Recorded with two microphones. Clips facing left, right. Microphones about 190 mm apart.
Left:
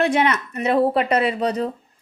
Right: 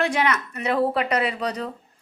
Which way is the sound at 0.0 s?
25° left (ahead or behind).